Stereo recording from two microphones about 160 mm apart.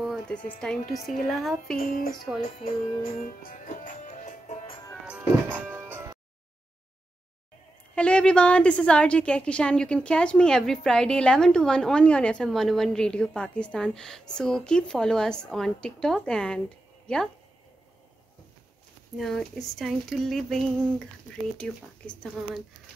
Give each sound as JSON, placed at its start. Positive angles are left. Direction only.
{"t": 0.0, "sound": "a woman's voice", "side_deg": 5}
{"t": 1.8, "sound": "speech", "side_deg": 65}
{"t": 2.6, "sound": "music", "side_deg": 65}
{"t": 5.0, "sound": "music", "side_deg": -10}
{"t": 7.9, "sound": "a woman's voice", "side_deg": 5}
{"t": 19.1, "sound": "a woman's voice", "side_deg": 0}